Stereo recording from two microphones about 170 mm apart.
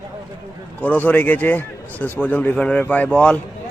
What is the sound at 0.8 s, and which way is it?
A man's voice, 10° left (ahead or behind).